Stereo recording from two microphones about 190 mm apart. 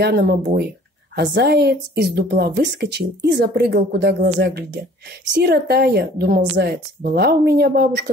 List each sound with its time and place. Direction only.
0.0 s a woman's voice: 55° right (ahead or behind)